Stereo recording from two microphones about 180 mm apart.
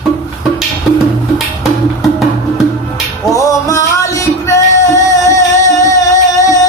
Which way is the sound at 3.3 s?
20° left (ahead or behind).